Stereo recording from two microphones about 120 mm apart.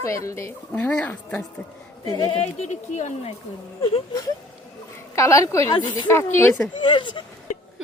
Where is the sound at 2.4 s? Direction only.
75° left (ahead or behind).